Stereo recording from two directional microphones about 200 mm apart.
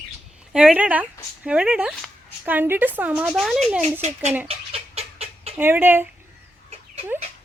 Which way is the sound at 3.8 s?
35° right (ahead or behind).